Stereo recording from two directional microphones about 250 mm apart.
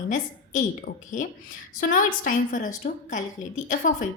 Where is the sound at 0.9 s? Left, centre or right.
Left.